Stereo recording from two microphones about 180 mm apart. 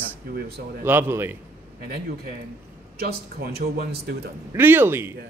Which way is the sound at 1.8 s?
55° right (ahead or behind).